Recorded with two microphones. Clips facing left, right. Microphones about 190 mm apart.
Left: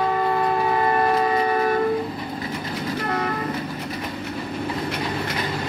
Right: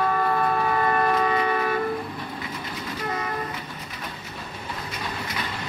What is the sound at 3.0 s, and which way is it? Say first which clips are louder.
Vehicle: left 3 dB; 65° left (ahead or behind).